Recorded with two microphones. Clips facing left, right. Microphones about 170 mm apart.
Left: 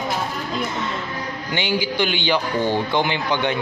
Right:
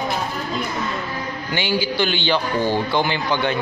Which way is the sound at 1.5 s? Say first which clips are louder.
Right 1 dB; 20° left (ahead or behind).